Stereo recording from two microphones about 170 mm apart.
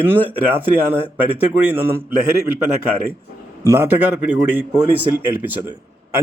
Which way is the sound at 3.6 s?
15° right (ahead or behind).